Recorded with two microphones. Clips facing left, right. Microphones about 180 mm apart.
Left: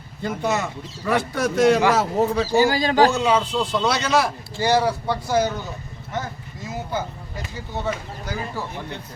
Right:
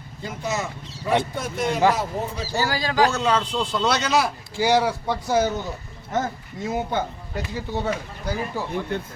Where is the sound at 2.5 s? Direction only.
20° left (ahead or behind).